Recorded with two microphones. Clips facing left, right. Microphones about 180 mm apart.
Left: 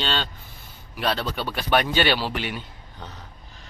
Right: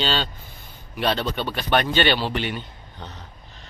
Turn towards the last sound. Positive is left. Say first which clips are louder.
# right 1 dB
turn(degrees=5)  # may be behind; listen again after turning